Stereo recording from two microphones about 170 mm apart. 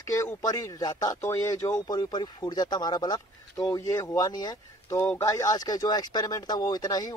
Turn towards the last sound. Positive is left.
turn(degrees=20)  # may be behind; listen again after turning